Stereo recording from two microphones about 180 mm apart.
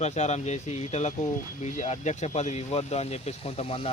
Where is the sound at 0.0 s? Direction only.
40° left (ahead or behind).